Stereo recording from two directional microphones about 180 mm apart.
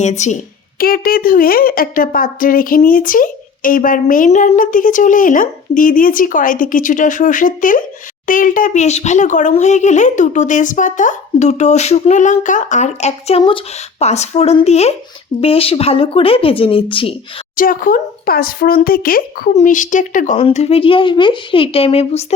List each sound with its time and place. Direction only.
0.0 s speech: 40° left (ahead or behind)
0.8 s a woman's voice: 55° left (ahead or behind); by 17.2 s 30° left (ahead or behind)
17.6 s a woman's voice: 50° left (ahead or behind); by 22.4 s 35° left (ahead or behind)